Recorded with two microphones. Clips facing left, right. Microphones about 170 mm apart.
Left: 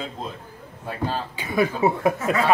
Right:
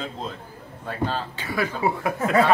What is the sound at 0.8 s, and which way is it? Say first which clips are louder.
Speech: even; 10° left (ahead or behind).